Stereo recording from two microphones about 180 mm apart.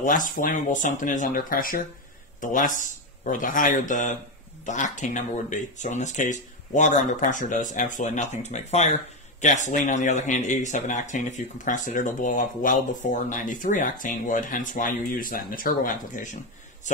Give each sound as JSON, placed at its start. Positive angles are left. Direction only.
{"t": 0.0, "sound": "speech", "side_deg": 45}